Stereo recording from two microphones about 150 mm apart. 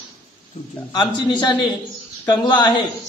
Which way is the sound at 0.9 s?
30° left (ahead or behind).